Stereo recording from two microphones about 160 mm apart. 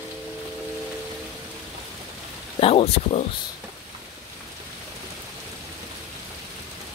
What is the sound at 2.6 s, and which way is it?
Speech, 40° left (ahead or behind).